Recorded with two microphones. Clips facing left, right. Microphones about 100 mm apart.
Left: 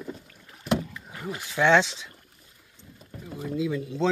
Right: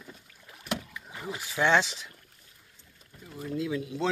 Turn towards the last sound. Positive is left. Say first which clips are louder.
# left 4 dB
turn(degrees=-10)  # may be behind; listen again after turning